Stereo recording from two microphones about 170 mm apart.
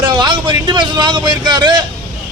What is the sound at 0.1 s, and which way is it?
A man's voice, 25° right (ahead or behind).